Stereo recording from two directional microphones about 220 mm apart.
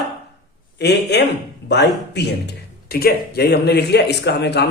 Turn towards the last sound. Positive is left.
turn(degrees=50)  # may be behind; listen again after turning